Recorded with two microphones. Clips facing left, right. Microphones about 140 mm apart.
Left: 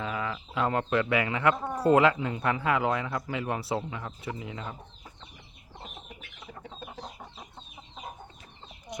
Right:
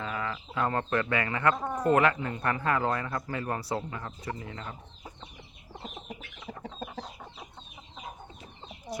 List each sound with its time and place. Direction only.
0.0 s chicken: 10° left (ahead or behind)
0.7 s speech: 10° left (ahead or behind)
6.8 s chicken: 45° right (ahead or behind)